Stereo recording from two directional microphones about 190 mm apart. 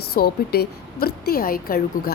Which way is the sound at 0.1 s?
55° left (ahead or behind).